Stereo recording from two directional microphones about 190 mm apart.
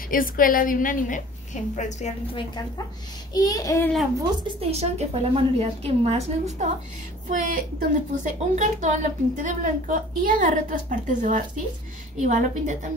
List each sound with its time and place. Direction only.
0.1 s a woman's voice: 45° left (ahead or behind)
3.3 s a child's voice: 20° left (ahead or behind)
4.2 s a woman's voice: 30° right (ahead or behind)